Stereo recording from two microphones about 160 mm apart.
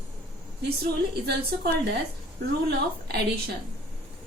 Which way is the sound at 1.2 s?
90° right.